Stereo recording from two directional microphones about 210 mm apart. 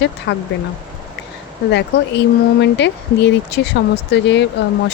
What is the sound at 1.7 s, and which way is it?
Speech, 55° left (ahead or behind).